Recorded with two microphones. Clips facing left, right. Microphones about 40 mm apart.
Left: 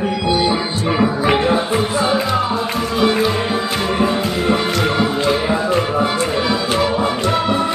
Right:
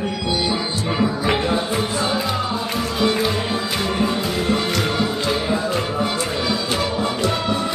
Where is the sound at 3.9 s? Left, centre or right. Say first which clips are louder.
Left 4 dB; centre.